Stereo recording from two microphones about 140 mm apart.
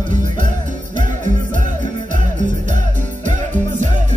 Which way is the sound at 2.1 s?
65° right (ahead or behind).